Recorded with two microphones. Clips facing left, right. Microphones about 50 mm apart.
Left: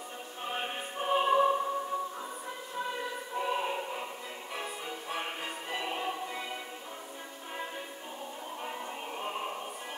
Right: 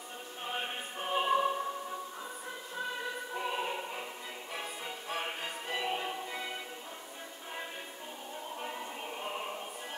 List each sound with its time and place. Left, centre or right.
0.5 s music: centre
3.3 s music: centre
8.6 s music: centre